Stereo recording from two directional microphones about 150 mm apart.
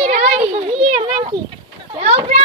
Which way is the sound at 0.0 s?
50° right (ahead or behind).